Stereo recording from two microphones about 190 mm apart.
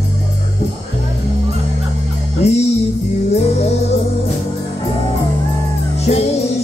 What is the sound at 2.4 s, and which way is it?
Music, 35° left (ahead or behind).